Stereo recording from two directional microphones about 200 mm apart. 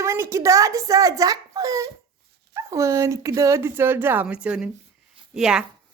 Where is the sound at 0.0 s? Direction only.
15° right (ahead or behind).